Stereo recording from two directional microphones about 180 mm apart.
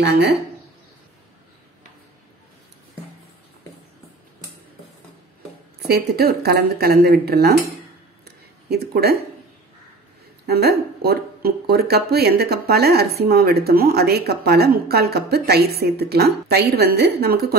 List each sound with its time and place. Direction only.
0.0 s speech: 65° right (ahead or behind)
5.9 s speech: 60° right (ahead or behind)
8.6 s speech: 60° right (ahead or behind)
10.4 s speech: 60° right (ahead or behind)